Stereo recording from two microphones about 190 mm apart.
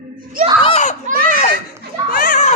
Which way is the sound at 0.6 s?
35° left (ahead or behind).